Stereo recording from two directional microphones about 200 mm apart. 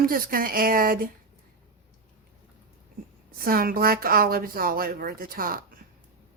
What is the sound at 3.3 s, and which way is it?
A woman's voice, 45° right (ahead or behind).